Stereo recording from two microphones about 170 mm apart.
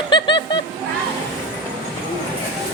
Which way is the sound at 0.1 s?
25° left (ahead or behind).